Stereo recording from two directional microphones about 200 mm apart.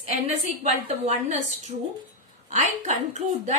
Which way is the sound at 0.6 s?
35° right (ahead or behind).